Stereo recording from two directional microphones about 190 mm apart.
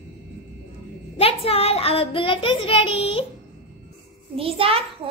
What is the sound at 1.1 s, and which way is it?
Speech, 30° left (ahead or behind).